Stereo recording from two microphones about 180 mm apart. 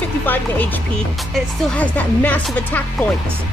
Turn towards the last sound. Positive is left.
turn(degrees=10)  # may be behind; listen again after turning